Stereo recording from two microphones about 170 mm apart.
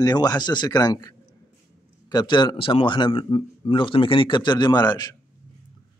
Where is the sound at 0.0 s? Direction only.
20° left (ahead or behind).